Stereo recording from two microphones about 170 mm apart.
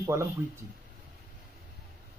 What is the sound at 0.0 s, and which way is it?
Speech, 15° right (ahead or behind).